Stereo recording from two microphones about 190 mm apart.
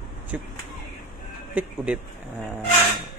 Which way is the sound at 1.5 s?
5° right (ahead or behind).